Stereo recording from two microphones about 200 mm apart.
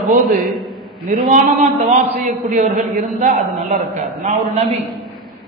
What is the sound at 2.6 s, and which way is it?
Speech, centre (ahead or behind).